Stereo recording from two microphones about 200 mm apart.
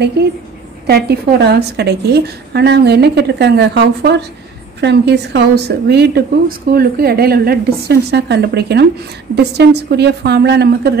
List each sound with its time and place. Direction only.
0.2 s a woman's voice: 55° right (ahead or behind)